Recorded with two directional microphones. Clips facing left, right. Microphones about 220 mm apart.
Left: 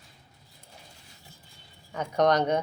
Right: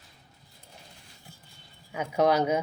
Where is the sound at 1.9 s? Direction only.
5° right (ahead or behind).